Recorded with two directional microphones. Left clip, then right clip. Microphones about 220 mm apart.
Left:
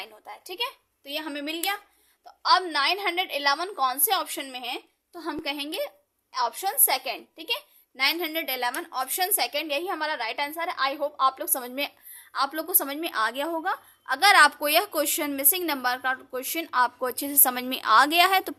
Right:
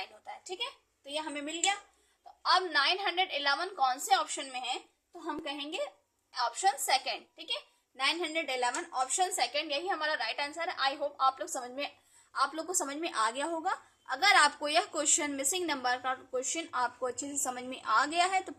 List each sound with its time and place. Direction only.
0.0 s speech: 60° left (ahead or behind)
2.4 s a woman's voice: 60° left (ahead or behind)
12.3 s a woman's voice: 40° left (ahead or behind)